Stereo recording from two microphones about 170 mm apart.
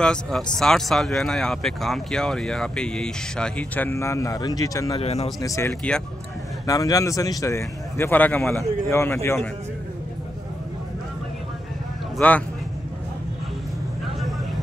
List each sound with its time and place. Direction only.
0.0 s speech: 5° left (ahead or behind); by 4.9 s 20° left (ahead or behind)
4.9 s speech: 35° left (ahead or behind)
5.4 s a man's voice: 20° left (ahead or behind)
12.2 s a man's voice: 10° left (ahead or behind)